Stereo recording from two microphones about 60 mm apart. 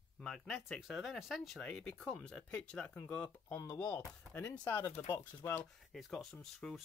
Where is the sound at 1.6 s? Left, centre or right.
Centre; by 4.5 s left.